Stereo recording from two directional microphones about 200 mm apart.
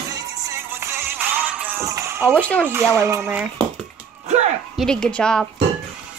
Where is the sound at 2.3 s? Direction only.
5° left (ahead or behind).